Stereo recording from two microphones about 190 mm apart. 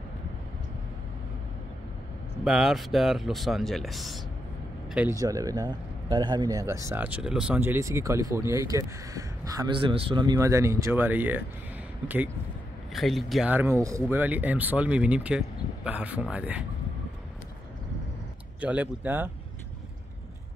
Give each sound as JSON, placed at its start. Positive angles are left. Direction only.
{"t": 2.4, "sound": "speech", "side_deg": 0}
{"t": 5.2, "sound": "speech", "side_deg": -20}
{"t": 12.9, "sound": "speech", "side_deg": 0}
{"t": 18.6, "sound": "speech", "side_deg": -10}